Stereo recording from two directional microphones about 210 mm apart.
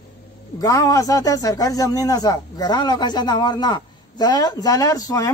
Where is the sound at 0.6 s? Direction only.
15° left (ahead or behind).